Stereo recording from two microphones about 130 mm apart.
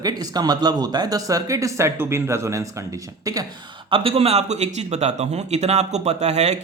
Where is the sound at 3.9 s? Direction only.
45° right (ahead or behind).